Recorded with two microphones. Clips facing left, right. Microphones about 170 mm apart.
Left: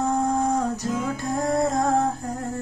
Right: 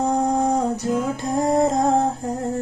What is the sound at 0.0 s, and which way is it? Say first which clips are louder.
Music: right 3 dB; 20° right (ahead or behind).